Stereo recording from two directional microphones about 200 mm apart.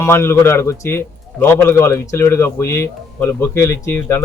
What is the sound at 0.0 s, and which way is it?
A man's voice, 15° left (ahead or behind).